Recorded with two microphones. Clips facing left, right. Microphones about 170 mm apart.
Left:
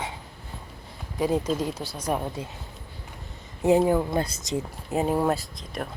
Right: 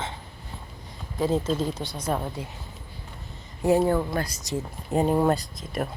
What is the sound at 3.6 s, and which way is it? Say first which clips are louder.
Speech: left 1 dB; 15° left (ahead or behind).